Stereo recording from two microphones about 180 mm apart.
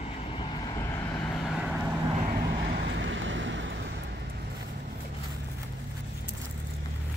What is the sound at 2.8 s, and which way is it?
Vehicle, 90° right.